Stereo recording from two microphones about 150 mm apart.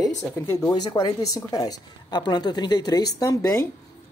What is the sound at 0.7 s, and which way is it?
Speech, 25° left (ahead or behind).